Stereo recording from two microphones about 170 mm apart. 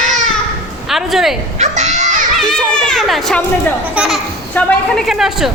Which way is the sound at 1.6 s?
40° right (ahead or behind).